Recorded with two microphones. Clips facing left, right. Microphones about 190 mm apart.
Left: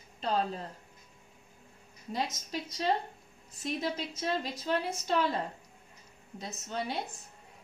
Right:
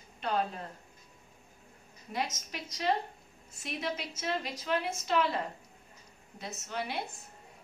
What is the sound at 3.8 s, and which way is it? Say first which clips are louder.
A woman's voice: right 1 dB; 30° left (ahead or behind).